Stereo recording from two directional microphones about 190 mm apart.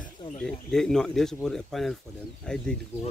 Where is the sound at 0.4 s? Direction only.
5° left (ahead or behind).